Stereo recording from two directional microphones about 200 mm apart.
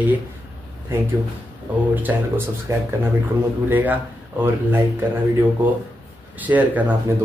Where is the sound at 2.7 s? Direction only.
15° right (ahead or behind).